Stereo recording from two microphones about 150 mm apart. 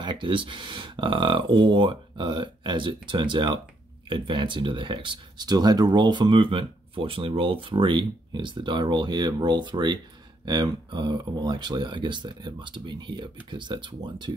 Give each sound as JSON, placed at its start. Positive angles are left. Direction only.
{"t": 0.0, "sound": "speech", "side_deg": -35}